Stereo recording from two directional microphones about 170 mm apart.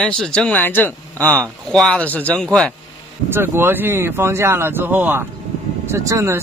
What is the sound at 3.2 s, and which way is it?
Speech, 15° right (ahead or behind).